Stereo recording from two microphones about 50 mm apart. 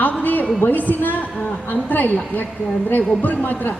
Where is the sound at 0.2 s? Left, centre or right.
Left.